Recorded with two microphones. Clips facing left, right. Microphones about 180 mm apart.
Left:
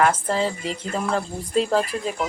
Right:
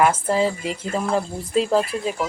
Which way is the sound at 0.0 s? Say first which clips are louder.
Right 2 dB; 10° right (ahead or behind).